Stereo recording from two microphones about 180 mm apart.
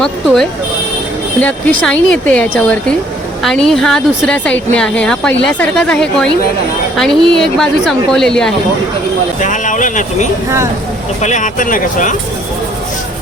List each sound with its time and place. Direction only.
1.4 s speech: 10° left (ahead or behind)
9.4 s speech: 45° left (ahead or behind)